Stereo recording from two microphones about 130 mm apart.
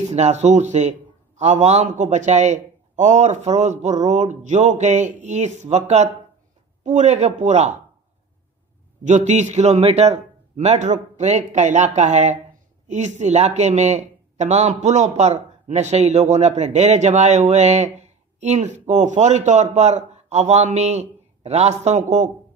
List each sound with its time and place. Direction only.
0.1 s a man's voice: 60° right (ahead or behind)
9.0 s a man's voice: 65° right (ahead or behind)